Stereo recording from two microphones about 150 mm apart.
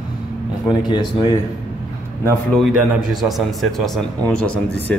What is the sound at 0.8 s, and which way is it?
Speech, 30° left (ahead or behind).